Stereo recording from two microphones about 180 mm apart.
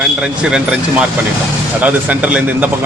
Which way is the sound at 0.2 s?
5° right (ahead or behind).